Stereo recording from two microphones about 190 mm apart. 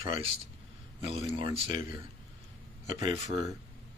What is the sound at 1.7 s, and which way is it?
Speech, 45° left (ahead or behind).